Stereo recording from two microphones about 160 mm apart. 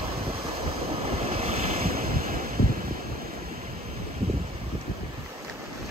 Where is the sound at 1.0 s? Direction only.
40° right (ahead or behind).